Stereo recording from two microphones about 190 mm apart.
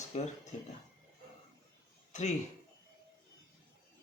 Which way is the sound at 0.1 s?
35° left (ahead or behind).